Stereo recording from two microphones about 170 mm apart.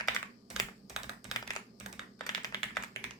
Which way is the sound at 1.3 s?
20° left (ahead or behind).